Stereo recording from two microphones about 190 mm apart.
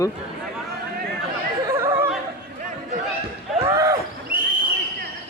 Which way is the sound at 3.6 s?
15° right (ahead or behind).